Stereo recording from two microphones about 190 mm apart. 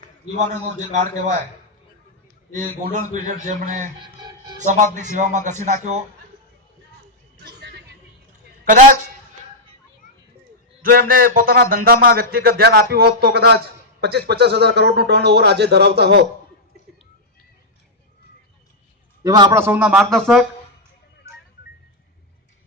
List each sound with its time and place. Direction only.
0.0 s a man's voice: 40° right (ahead or behind)
2.6 s a man's voice: 40° right (ahead or behind)
8.6 s speech: 45° right (ahead or behind)
10.8 s speech: 50° right (ahead or behind)
19.2 s a man's voice: 20° right (ahead or behind); by 20.5 s centre (ahead or behind)